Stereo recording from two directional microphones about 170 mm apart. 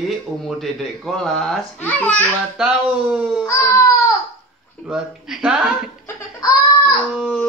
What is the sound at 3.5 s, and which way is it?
Speech, 15° left (ahead or behind).